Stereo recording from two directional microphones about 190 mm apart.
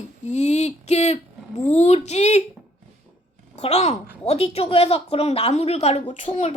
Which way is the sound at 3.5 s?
35° left (ahead or behind).